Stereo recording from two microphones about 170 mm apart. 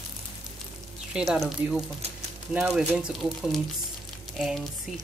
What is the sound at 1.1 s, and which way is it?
Speech, centre (ahead or behind).